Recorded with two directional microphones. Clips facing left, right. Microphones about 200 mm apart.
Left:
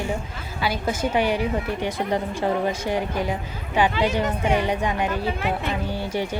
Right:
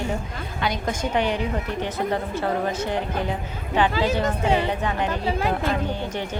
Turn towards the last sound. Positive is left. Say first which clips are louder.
# left 1 dB
turn(degrees=15)  # may be behind; listen again after turning